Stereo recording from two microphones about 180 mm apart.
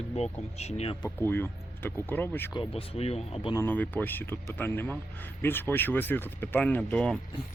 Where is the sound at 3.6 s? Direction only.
10° left (ahead or behind).